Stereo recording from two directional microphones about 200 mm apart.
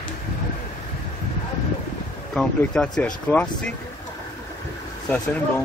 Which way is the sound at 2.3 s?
5° left (ahead or behind).